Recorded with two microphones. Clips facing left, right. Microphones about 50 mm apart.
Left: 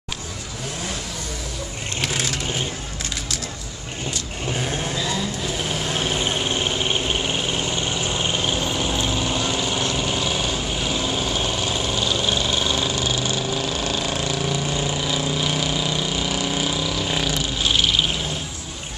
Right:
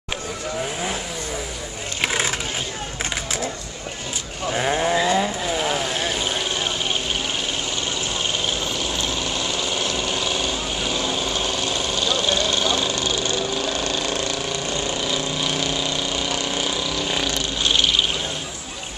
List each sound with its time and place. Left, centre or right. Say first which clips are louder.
2.0 s vehicle: right 3 dB; right
4.6 s sheep: right 8 dB; right
6.2 s a sound: left 1 dB; left; by 18.0 s centre